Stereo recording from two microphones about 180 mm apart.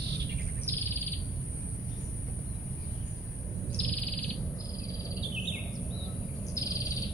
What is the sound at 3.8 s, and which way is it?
Bird, 5° left (ahead or behind).